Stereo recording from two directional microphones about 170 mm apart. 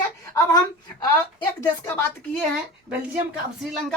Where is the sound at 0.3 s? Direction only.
20° left (ahead or behind).